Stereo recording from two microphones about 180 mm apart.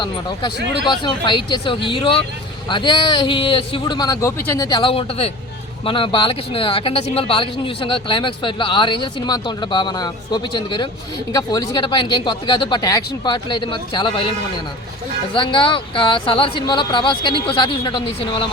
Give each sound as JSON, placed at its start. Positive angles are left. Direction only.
{"t": 0.9, "sound": "speech", "side_deg": 25}
{"t": 4.8, "sound": "a man's voice", "side_deg": 30}